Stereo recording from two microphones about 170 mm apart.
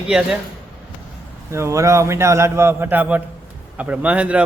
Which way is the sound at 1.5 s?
15° right (ahead or behind).